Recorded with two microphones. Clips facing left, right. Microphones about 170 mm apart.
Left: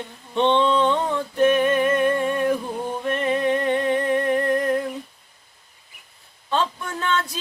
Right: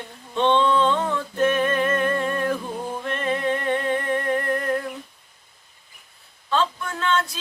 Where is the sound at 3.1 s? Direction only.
15° left (ahead or behind).